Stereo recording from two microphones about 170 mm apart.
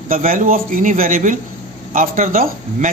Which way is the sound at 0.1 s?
55° right (ahead or behind).